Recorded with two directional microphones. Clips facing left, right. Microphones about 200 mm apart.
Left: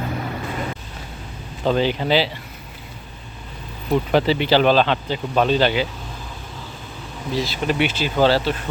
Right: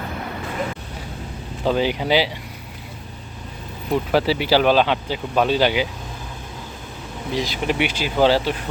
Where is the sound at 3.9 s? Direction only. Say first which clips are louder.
Left 1 dB; 5° right (ahead or behind).